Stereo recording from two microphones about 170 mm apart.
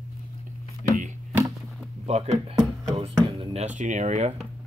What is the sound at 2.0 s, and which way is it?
Speech, 40° right (ahead or behind).